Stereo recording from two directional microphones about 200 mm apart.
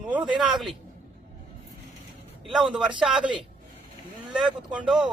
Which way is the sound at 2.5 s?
Centre (ahead or behind).